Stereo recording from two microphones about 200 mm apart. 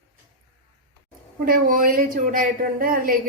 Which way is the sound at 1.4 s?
45° right (ahead or behind).